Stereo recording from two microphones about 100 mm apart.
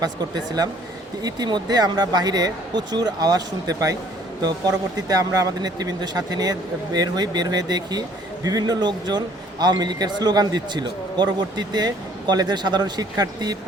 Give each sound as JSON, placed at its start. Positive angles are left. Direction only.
{"t": 0.0, "sound": "speech", "side_deg": -40}